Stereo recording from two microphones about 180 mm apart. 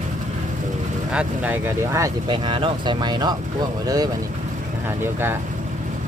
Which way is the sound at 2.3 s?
30° right (ahead or behind).